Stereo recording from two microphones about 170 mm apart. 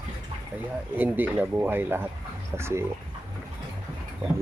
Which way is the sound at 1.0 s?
10° right (ahead or behind).